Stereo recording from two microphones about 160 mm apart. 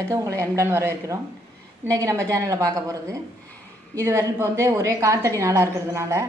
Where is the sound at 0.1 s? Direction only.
20° right (ahead or behind).